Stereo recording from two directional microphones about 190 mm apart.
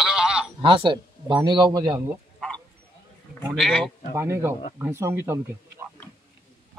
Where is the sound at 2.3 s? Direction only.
5° left (ahead or behind).